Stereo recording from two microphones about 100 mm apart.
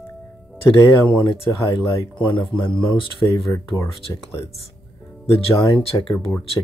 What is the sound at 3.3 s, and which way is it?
Speech, 30° left (ahead or behind).